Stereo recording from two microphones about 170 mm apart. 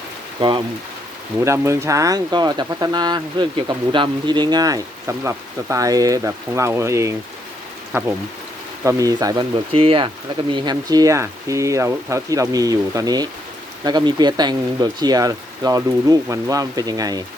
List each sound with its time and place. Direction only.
0.3 s speech: 25° right (ahead or behind)
1.5 s speech: 15° right (ahead or behind)